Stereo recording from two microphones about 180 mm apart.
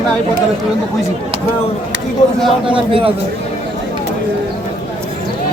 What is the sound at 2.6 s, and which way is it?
Speech, 30° right (ahead or behind).